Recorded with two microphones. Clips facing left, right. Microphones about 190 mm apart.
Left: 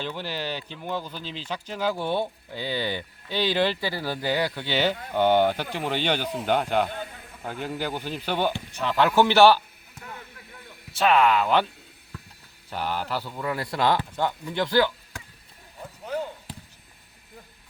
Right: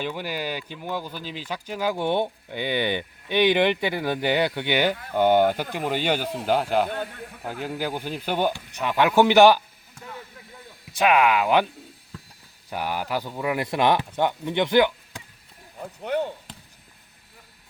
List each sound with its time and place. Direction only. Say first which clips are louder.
0.0 s a man's voice: right 2 dB; 10° right (ahead or behind)
10.9 s a man's voice: right 1 dB; 15° right (ahead or behind)
12.7 s a man's voice: right 2 dB; 10° right (ahead or behind)